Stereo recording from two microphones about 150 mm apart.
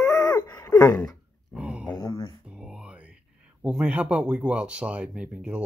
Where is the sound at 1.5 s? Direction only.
5° right (ahead or behind).